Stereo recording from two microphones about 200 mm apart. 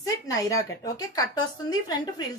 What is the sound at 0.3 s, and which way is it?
A woman's voice, 15° left (ahead or behind).